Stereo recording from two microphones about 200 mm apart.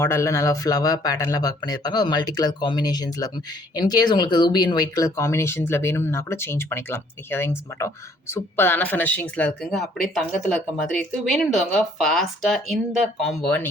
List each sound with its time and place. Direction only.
0.0 s speech: 15° left (ahead or behind)